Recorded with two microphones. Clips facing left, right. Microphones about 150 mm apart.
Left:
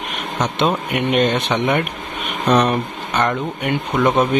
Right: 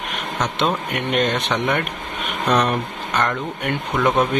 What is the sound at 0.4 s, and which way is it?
Speech, 5° left (ahead or behind).